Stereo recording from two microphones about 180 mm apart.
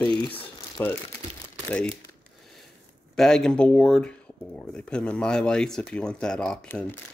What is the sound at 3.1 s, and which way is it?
Speech, 5° left (ahead or behind).